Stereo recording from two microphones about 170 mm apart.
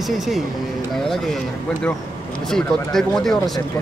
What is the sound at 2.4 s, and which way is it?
Speech, 5° left (ahead or behind).